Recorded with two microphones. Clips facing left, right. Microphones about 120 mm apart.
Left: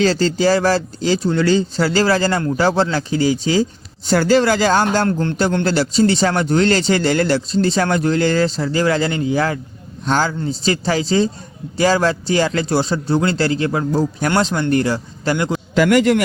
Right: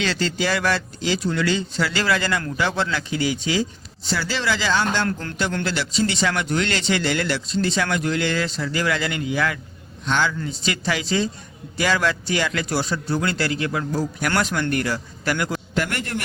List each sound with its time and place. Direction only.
0.0 s a man's voice: 35° left (ahead or behind)
4.0 s a man's voice: 50° left (ahead or behind); by 15.5 s 25° left (ahead or behind)
15.9 s a man's voice: 90° left